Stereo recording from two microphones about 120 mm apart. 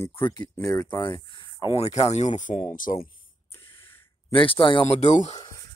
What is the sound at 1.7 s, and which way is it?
Speech, 60° left (ahead or behind).